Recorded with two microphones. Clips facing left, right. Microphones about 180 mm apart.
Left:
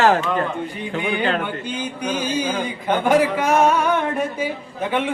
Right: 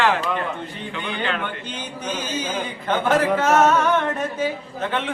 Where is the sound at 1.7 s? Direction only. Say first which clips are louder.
Left 5 dB; 10° left (ahead or behind).